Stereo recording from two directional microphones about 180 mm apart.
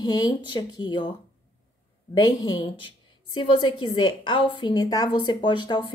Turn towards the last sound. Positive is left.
turn(degrees=25)  # may be behind; listen again after turning